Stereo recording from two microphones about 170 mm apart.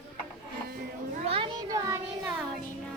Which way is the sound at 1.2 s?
35° right (ahead or behind).